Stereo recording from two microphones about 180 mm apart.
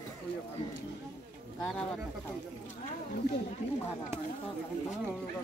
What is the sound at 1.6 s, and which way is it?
Speech, 5° left (ahead or behind).